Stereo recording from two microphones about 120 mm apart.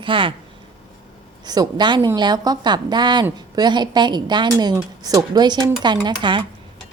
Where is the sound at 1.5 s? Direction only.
35° right (ahead or behind).